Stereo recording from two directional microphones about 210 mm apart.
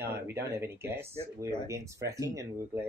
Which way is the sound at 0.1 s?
10° right (ahead or behind).